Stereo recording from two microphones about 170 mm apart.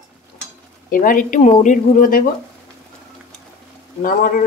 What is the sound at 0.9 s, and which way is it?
Speech, 50° left (ahead or behind).